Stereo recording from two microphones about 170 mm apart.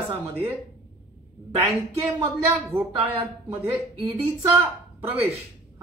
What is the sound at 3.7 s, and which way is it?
A woman's voice, 35° right (ahead or behind).